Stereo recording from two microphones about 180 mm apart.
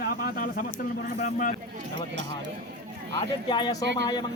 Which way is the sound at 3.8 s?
85° right.